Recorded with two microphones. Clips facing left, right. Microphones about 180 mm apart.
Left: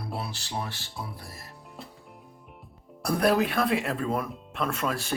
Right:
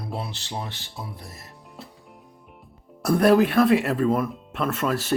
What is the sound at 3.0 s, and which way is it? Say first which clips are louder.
Speech: right 6 dB; centre (ahead or behind).